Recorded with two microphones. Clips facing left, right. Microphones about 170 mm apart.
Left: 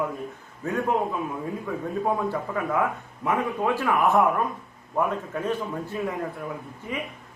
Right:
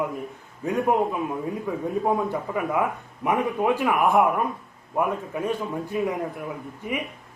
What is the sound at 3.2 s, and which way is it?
A man's voice, 15° right (ahead or behind).